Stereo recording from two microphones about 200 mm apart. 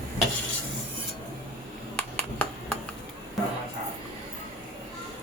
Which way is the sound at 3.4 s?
Centre (ahead or behind).